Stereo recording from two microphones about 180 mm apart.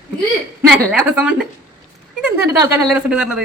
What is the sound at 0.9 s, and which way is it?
A woman's voice, 5° right (ahead or behind).